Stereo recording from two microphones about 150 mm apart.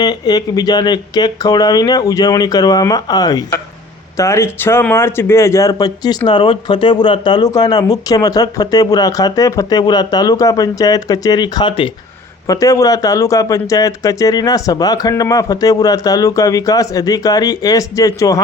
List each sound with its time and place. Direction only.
0.0 s speech: 25° left (ahead or behind)